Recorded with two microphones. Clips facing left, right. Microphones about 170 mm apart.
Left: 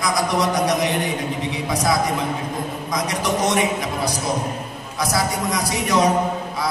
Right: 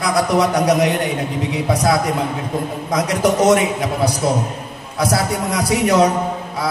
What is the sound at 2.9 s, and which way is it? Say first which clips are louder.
Mantra: right 7 dB; 60° right (ahead or behind).